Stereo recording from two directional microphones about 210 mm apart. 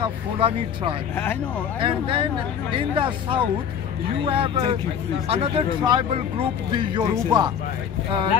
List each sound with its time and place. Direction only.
0.0 s speech: 25° right (ahead or behind)
1.1 s speech: 10° left (ahead or behind)
1.8 s speech: 25° right (ahead or behind)